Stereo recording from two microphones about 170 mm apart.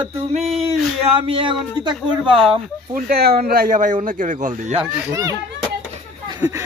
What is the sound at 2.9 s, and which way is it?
Speech, 65° right (ahead or behind).